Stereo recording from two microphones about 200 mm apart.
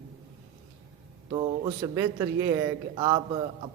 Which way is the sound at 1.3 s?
20° right (ahead or behind).